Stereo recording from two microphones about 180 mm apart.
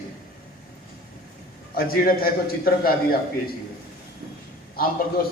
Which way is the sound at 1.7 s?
55° left (ahead or behind).